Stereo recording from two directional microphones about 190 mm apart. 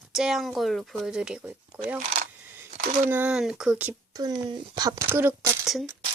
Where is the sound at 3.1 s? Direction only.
5° right (ahead or behind).